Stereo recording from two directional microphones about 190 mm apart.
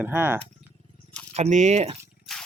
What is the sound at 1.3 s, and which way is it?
Speech, 35° right (ahead or behind).